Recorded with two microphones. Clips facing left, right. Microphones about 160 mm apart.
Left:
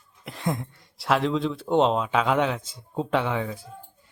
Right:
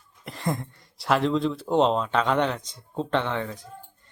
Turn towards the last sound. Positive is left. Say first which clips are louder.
# even
turn(degrees=5)  # may be behind; listen again after turning